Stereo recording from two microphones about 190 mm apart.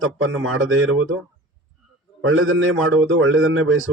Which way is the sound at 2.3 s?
90° right.